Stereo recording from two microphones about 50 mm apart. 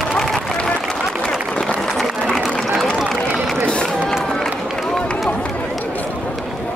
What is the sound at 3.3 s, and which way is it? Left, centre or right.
Run, centre.